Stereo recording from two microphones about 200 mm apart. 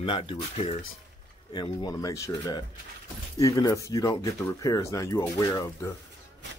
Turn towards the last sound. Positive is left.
turn(degrees=15)  # may be behind; listen again after turning